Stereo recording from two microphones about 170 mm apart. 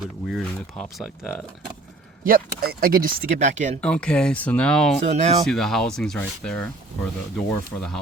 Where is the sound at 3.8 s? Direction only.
5° left (ahead or behind).